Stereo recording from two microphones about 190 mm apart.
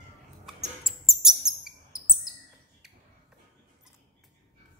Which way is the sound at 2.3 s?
Centre (ahead or behind).